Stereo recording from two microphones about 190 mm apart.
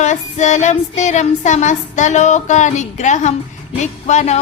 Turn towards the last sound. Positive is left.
turn(degrees=35)  # may be behind; listen again after turning